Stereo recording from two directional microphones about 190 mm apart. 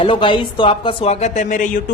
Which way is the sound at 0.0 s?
25° left (ahead or behind).